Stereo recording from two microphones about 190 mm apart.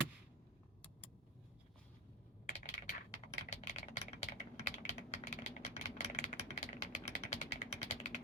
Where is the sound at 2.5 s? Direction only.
35° left (ahead or behind).